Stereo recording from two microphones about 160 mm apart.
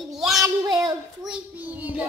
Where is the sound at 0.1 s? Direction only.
Centre (ahead or behind).